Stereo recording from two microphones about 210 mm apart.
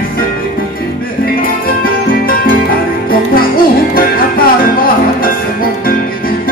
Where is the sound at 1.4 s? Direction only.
45° left (ahead or behind).